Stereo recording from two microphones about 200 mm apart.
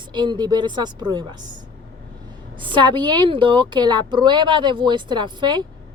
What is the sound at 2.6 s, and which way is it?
Speech, 25° right (ahead or behind).